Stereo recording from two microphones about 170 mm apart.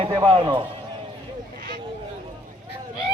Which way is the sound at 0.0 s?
30° right (ahead or behind).